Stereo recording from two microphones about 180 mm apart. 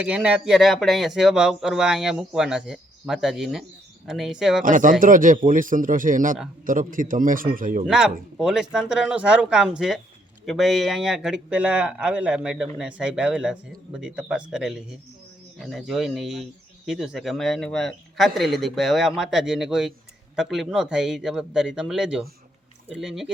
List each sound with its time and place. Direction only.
0.0 s speech: 5° right (ahead or behind)
4.6 s speech: 45° right (ahead or behind)
7.9 s speech: 5° right (ahead or behind)